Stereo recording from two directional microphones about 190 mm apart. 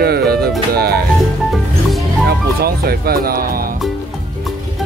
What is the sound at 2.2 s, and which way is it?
Music, 55° right (ahead or behind).